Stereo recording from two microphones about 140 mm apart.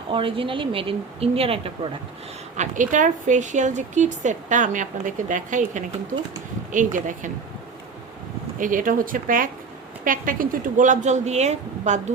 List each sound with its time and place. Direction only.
0.1 s a woman's voice: 40° right (ahead or behind)
2.6 s speech: 65° right (ahead or behind)
8.5 s speech: 70° right (ahead or behind); by 12.1 s 55° right (ahead or behind)